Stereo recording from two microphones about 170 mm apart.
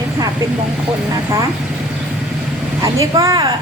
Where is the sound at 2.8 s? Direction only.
20° right (ahead or behind).